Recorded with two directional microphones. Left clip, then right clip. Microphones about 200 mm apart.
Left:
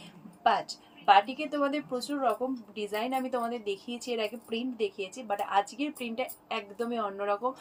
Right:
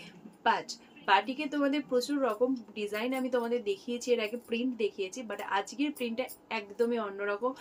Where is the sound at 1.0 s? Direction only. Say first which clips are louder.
Left 4 dB; 15° right (ahead or behind).